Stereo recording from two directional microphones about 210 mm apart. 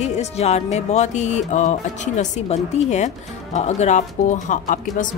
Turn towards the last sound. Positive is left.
turn(degrees=40)  # may be behind; listen again after turning